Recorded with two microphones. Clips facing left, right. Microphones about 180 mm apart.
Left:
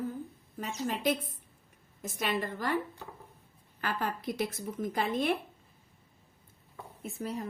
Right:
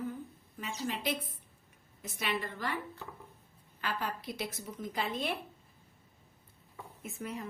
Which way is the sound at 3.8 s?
50° left (ahead or behind).